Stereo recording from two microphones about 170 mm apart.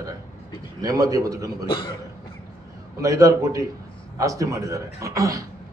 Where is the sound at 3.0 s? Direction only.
20° right (ahead or behind).